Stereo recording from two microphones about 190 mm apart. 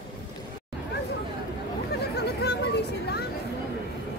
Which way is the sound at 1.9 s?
60° left (ahead or behind).